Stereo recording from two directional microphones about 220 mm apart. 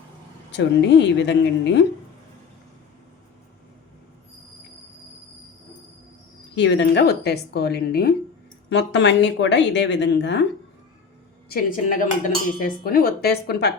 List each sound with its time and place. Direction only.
0.5 s dishes: 55° left (ahead or behind)
6.6 s dishes: 55° left (ahead or behind)
11.4 s dishes: 40° left (ahead or behind)